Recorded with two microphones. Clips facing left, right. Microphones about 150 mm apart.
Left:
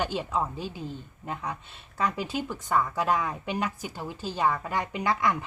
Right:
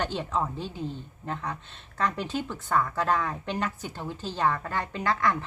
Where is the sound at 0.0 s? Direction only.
10° left (ahead or behind).